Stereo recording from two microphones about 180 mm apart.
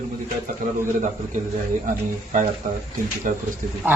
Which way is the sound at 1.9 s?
45° right (ahead or behind).